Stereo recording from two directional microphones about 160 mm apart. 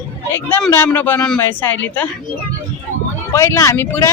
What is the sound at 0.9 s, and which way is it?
Speech, 10° left (ahead or behind).